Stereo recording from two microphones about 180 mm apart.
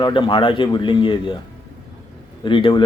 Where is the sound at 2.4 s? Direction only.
25° left (ahead or behind).